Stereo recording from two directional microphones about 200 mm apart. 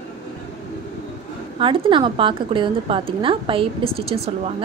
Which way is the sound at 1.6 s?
25° right (ahead or behind).